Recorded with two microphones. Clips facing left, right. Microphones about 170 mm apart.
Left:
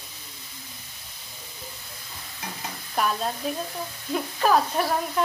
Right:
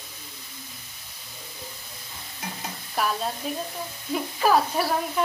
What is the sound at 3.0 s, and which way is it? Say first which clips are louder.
Speech: left 1 dB; centre (ahead or behind).